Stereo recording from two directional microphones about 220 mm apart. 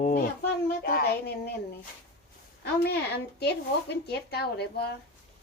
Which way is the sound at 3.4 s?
50° left (ahead or behind).